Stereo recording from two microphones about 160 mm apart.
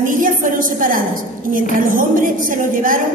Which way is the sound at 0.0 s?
60° right (ahead or behind).